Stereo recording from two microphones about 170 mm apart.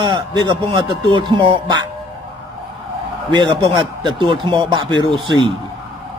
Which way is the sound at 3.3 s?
25° right (ahead or behind).